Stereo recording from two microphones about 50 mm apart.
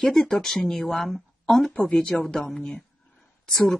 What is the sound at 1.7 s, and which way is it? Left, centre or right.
Speech, left.